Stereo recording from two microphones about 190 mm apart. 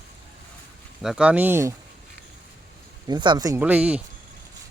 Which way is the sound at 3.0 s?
25° right (ahead or behind).